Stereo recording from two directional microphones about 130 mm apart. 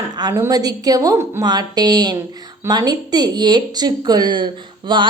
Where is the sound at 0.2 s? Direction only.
30° right (ahead or behind).